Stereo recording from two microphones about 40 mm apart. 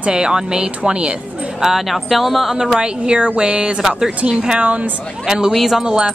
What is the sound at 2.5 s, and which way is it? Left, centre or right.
Speech, centre.